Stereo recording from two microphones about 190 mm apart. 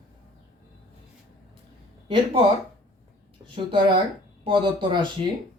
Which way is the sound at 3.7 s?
25° right (ahead or behind).